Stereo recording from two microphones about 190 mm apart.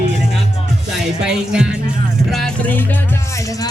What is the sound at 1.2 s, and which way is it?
Speech, 5° right (ahead or behind).